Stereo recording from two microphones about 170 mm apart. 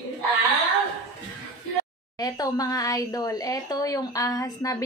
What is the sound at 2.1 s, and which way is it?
A woman's voice, 20° left (ahead or behind).